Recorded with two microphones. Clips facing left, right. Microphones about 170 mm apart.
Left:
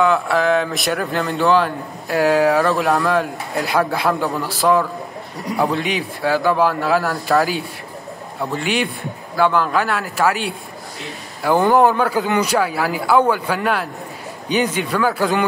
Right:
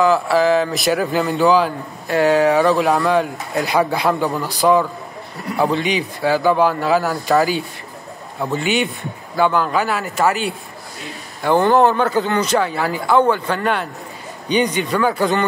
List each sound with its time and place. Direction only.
0.0 s speech: centre (ahead or behind)